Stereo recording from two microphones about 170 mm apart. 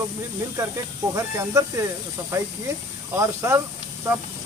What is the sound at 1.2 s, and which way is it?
Speech, 20° right (ahead or behind).